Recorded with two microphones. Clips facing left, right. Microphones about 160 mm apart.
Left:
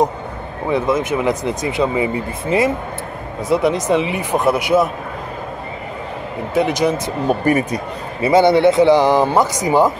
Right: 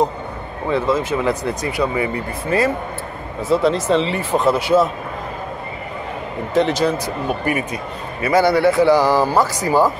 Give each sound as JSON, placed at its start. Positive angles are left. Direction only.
{"t": 0.7, "sound": "speech", "side_deg": 15}
{"t": 6.5, "sound": "speech", "side_deg": 10}
{"t": 7.4, "sound": "speech", "side_deg": 40}
{"t": 8.2, "sound": "speech", "side_deg": 25}